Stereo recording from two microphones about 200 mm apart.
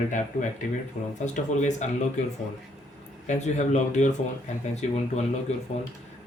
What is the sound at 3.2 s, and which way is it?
Speech, 35° left (ahead or behind).